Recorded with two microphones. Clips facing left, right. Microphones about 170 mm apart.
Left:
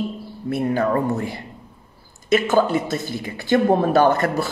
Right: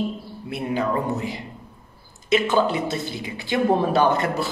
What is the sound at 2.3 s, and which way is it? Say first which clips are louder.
Speech: left 2 dB; 45° left (ahead or behind).